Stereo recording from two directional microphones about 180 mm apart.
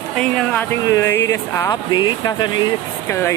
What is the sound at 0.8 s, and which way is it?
Speech, 15° left (ahead or behind).